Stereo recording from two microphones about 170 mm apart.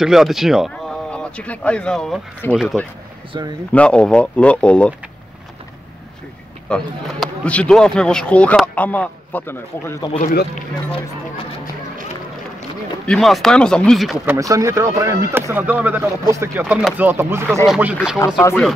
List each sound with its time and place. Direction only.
0.0 s speech: centre (ahead or behind)
3.3 s speech: 25° right (ahead or behind)
3.7 s speech: 5° left (ahead or behind)
6.7 s speech: 5° left (ahead or behind)
10.2 s speech: 50° left (ahead or behind)
13.0 s speech: 5° left (ahead or behind)
14.2 s speech: 20° right (ahead or behind)
18.2 s speech: 20° left (ahead or behind)